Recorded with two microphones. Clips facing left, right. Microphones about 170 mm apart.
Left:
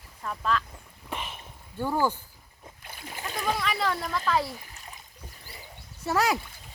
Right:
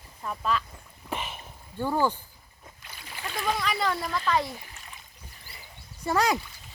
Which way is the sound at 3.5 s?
Centre (ahead or behind).